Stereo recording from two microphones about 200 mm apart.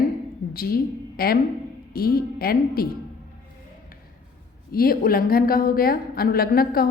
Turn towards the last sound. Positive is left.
turn(degrees=50)  # may be behind; listen again after turning